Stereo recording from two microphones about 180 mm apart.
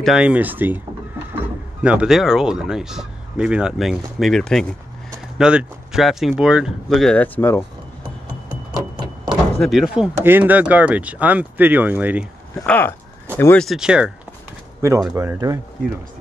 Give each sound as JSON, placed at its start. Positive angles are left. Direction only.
{"t": 0.0, "sound": "speech", "side_deg": -5}
{"t": 9.0, "sound": "door", "side_deg": -25}
{"t": 9.6, "sound": "speech", "side_deg": 0}
{"t": 12.5, "sound": "speech", "side_deg": 10}
{"t": 13.7, "sound": "speech", "side_deg": -5}
{"t": 14.8, "sound": "speech", "side_deg": -15}